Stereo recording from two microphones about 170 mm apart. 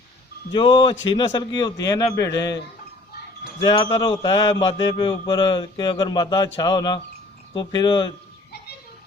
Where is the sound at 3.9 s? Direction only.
25° left (ahead or behind).